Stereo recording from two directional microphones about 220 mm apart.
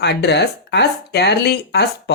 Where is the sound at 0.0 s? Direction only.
50° left (ahead or behind).